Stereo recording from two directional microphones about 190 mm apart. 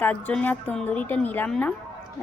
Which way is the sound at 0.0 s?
10° left (ahead or behind).